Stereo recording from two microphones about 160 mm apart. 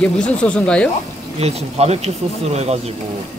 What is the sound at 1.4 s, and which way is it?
Speech, 40° right (ahead or behind).